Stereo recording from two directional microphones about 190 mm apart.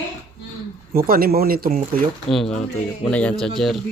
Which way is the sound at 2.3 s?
Centre (ahead or behind).